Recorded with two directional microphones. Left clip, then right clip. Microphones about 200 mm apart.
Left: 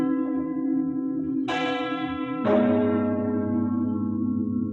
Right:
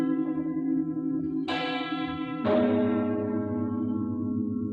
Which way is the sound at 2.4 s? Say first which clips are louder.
Left 3 dB; 40° right (ahead or behind).